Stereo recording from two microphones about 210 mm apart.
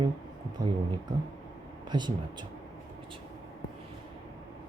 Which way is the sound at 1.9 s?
20° right (ahead or behind).